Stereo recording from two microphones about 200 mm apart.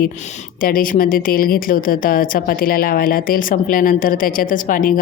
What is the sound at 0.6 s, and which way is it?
Speech, 45° left (ahead or behind).